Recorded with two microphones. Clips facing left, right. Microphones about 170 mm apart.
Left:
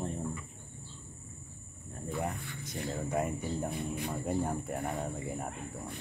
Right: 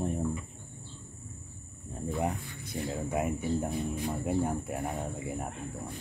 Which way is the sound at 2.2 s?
25° right (ahead or behind).